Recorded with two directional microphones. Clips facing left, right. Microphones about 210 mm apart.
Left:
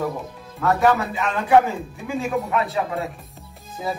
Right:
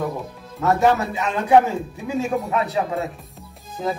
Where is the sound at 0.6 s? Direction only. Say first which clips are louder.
Right 1 dB; 20° right (ahead or behind).